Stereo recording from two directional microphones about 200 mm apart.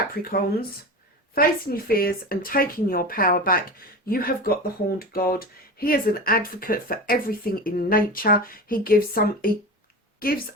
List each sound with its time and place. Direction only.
0.1 s speech: 45° left (ahead or behind)